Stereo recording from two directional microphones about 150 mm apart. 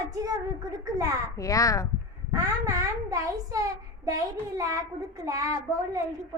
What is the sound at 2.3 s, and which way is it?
A child's voice, 20° right (ahead or behind).